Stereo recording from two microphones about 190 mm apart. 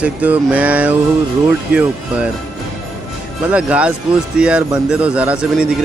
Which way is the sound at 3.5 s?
5° right (ahead or behind).